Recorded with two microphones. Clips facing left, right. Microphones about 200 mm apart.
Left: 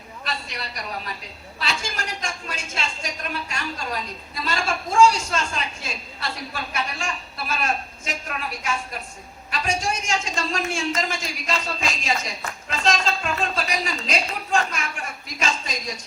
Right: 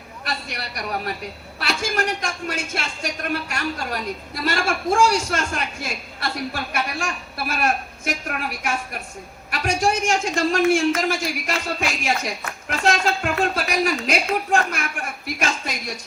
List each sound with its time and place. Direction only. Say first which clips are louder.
0.3 s a man's voice: right 2 dB; 65° right (ahead or behind)